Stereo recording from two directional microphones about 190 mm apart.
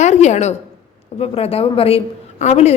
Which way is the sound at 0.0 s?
35° left (ahead or behind).